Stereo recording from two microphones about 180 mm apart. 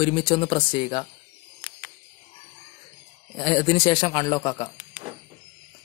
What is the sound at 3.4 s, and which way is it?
A man's voice, 30° left (ahead or behind).